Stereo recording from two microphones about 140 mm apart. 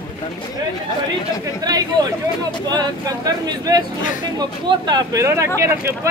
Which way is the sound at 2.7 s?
30° right (ahead or behind).